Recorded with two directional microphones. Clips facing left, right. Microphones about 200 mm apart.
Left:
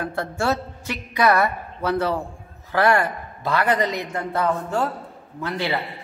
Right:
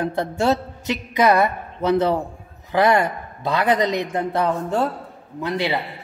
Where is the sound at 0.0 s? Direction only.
20° right (ahead or behind).